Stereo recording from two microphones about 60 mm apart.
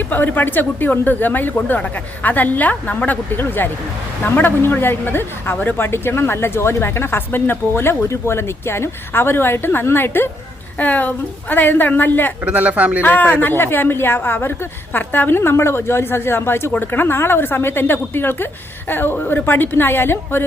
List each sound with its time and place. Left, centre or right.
0.1 s speech: left
12.5 s speech: right
13.0 s speech: left